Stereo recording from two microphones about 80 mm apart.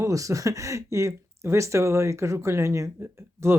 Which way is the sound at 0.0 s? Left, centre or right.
Right.